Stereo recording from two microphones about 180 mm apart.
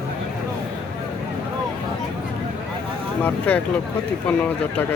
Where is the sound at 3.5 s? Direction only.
10° left (ahead or behind).